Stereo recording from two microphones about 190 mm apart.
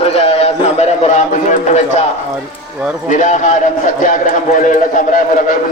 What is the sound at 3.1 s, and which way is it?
A man's voice, 40° left (ahead or behind).